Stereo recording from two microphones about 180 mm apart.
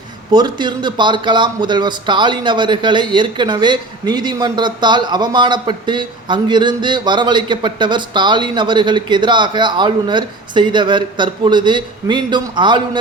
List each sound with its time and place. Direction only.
0.3 s speech: 25° right (ahead or behind)